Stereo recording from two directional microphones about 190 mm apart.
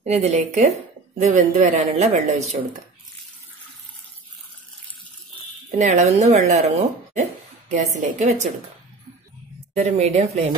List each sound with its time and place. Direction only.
0.0 s speech: 35° right (ahead or behind)
5.7 s speech: 40° right (ahead or behind)
7.7 s speech: 40° right (ahead or behind)
9.8 s speech: 35° right (ahead or behind)